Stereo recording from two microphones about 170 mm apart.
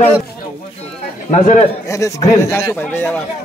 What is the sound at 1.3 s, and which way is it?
Speech, 45° left (ahead or behind).